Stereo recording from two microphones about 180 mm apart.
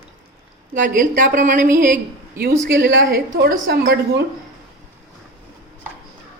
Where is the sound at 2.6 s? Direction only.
85° right; by 4.2 s 70° right (ahead or behind).